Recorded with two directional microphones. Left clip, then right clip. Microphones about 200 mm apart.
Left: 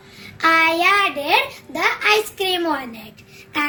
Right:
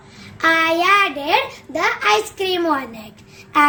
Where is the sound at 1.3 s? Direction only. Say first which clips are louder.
Even; 25° right (ahead or behind).